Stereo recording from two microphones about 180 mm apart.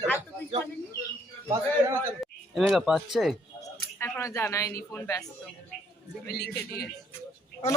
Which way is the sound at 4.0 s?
15° left (ahead or behind).